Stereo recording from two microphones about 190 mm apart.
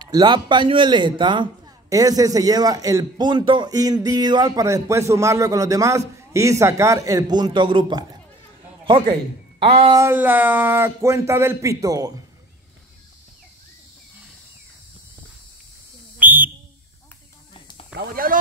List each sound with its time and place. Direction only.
0.0 s a man's voice: 25° right (ahead or behind)
9.9 s speech: 10° right (ahead or behind)
16.2 s whistle: 10° right (ahead or behind)
17.9 s speech: 50° right (ahead or behind)